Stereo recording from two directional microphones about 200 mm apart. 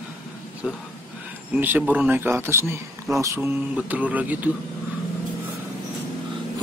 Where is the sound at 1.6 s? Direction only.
10° right (ahead or behind).